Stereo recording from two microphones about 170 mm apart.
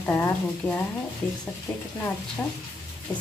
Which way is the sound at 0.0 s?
10° left (ahead or behind).